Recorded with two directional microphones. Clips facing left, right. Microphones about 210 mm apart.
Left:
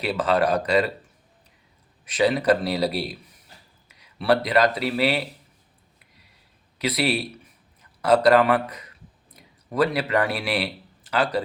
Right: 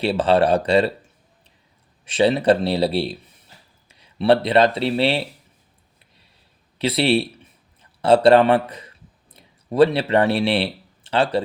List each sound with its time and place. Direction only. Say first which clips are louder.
0.0 s a man's voice: right 5 dB; 30° right (ahead or behind)
2.0 s a man's voice: right 3 dB; 30° right (ahead or behind)
6.7 s a sound: right 5 dB; 30° right (ahead or behind)